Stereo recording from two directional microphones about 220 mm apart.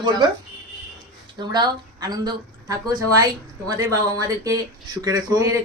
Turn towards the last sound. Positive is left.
turn(degrees=-15)  # may be behind; listen again after turning